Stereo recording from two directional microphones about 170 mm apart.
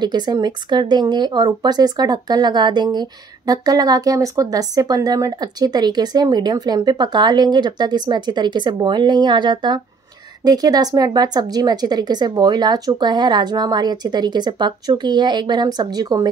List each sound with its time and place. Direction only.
0.0 s speech: 25° right (ahead or behind)